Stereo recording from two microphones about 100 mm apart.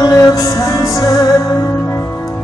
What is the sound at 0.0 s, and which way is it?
Music, 35° left (ahead or behind).